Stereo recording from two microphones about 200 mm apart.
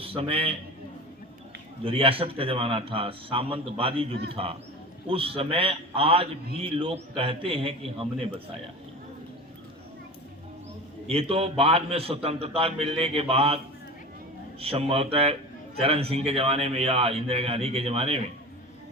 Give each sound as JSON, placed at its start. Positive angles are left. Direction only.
{"t": 0.0, "sound": "a man's voice", "side_deg": -30}
{"t": 1.8, "sound": "a man's voice", "side_deg": -25}
{"t": 11.0, "sound": "a man's voice", "side_deg": -30}
{"t": 14.6, "sound": "a man's voice", "side_deg": -30}